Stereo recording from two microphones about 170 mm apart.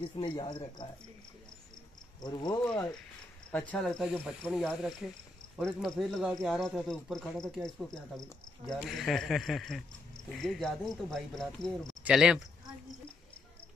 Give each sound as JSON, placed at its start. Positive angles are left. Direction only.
{"t": 0.0, "sound": "speech", "side_deg": 30}
{"t": 2.2, "sound": "speech", "side_deg": 25}
{"t": 2.6, "sound": "speech", "side_deg": 5}